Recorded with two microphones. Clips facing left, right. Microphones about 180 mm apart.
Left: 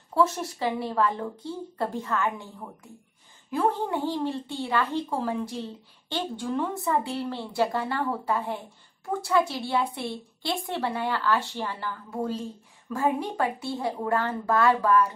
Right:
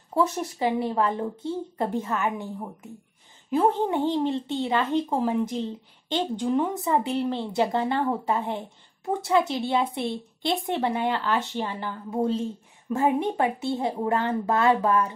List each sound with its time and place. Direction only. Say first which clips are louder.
0.1 s speech: even; 20° right (ahead or behind)